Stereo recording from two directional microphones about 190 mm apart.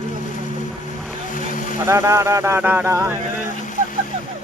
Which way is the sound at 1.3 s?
45° left (ahead or behind).